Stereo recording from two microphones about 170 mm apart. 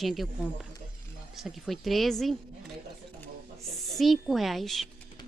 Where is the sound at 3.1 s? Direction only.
Centre (ahead or behind).